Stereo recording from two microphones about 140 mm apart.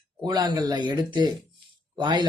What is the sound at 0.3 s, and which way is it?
Speech, 30° right (ahead or behind).